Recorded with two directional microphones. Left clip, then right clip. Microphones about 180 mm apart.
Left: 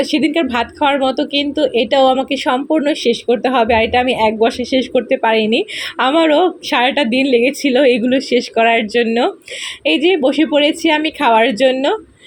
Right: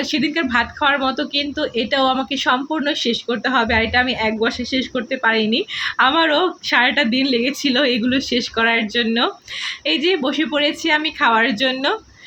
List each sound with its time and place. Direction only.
0.0 s speech: 15° left (ahead or behind)
8.8 s speech: 30° right (ahead or behind)
9.0 s speech: 15° left (ahead or behind)